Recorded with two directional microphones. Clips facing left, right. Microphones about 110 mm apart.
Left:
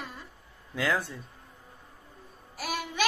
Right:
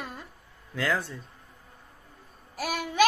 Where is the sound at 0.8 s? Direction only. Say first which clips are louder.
Even; 10° left (ahead or behind).